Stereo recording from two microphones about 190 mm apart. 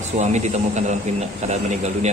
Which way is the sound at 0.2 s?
40° right (ahead or behind).